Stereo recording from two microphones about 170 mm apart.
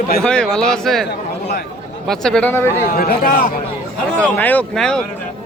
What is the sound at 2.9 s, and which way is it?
Speech, 55° left (ahead or behind).